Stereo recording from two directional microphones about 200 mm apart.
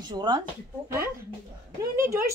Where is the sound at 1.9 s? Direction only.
15° right (ahead or behind).